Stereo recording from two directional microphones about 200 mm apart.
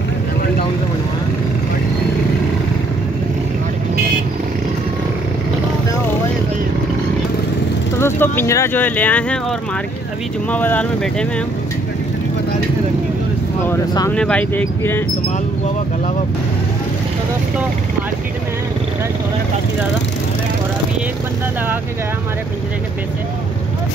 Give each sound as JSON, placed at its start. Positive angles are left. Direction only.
{"t": 8.0, "sound": "speech", "side_deg": 10}
{"t": 10.5, "sound": "speech", "side_deg": 10}
{"t": 13.7, "sound": "speech", "side_deg": 15}
{"t": 14.1, "sound": "speech", "side_deg": 5}